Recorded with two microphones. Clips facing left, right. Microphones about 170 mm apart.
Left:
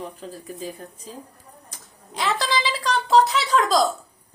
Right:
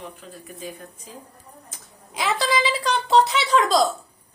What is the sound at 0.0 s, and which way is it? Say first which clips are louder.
Speech: left 4 dB; 35° left (ahead or behind).